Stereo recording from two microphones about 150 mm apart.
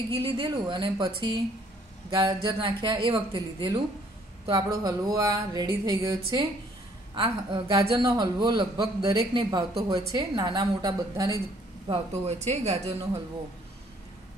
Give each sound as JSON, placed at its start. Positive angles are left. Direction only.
{"t": 0.1, "sound": "a man's voice", "side_deg": -35}
{"t": 11.9, "sound": "a woman's voice", "side_deg": -45}